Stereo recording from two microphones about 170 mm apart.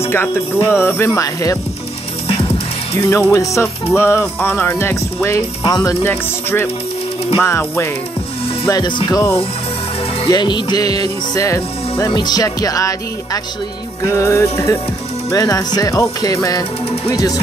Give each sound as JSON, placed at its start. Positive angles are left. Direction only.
{"t": 0.0, "sound": "music", "side_deg": 15}
{"t": 2.2, "sound": "music", "side_deg": 35}
{"t": 3.0, "sound": "music", "side_deg": 15}